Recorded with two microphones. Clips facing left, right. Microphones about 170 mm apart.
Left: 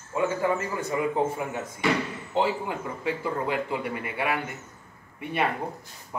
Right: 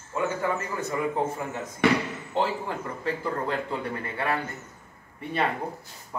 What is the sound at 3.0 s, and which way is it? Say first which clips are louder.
Speech: left 1 dB; 10° left (ahead or behind).